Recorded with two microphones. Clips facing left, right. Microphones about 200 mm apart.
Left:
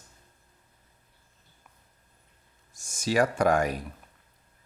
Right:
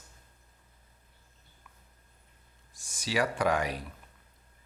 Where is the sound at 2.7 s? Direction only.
45° left (ahead or behind).